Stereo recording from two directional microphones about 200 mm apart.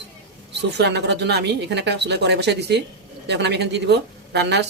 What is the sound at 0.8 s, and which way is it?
A woman's voice, 60° right (ahead or behind).